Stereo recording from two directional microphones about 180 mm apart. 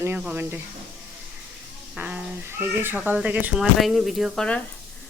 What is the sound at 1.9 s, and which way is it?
Speech, 10° right (ahead or behind).